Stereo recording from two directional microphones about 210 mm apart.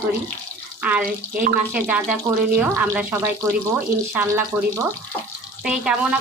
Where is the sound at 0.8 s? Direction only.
5° right (ahead or behind).